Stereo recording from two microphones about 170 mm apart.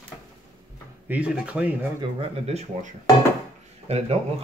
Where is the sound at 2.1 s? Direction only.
40° right (ahead or behind).